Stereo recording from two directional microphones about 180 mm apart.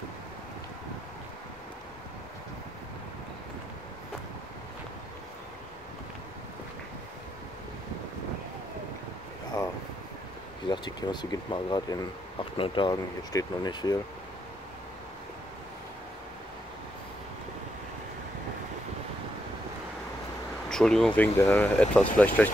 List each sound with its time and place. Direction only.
10.7 s speech: 25° left (ahead or behind)
20.7 s speech: 5° left (ahead or behind)
21.4 s speech: 15° left (ahead or behind)